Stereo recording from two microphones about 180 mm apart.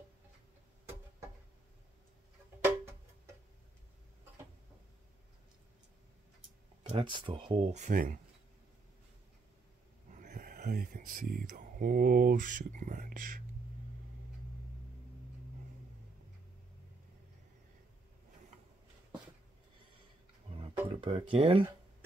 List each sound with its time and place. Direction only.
2.6 s music: 15° right (ahead or behind)
6.9 s speech: 25° right (ahead or behind); by 8.2 s 50° right (ahead or behind)
10.1 s speech: 45° right (ahead or behind)
20.9 s speech: 30° right (ahead or behind)